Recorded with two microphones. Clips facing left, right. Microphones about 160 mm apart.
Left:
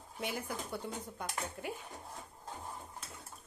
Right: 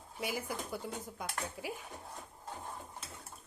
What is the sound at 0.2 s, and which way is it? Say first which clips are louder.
Speech: right 1 dB; 5° right (ahead or behind).